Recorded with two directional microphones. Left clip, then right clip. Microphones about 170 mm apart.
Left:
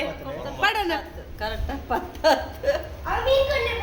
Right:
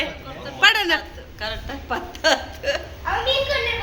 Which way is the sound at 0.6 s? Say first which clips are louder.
Right 7 dB; 5° right (ahead or behind).